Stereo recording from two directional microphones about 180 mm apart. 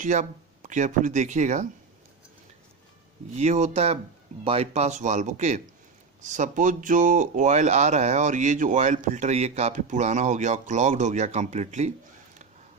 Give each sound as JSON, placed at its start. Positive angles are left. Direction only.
{"t": 0.0, "sound": "speech", "side_deg": -45}
{"t": 3.3, "sound": "speech", "side_deg": -40}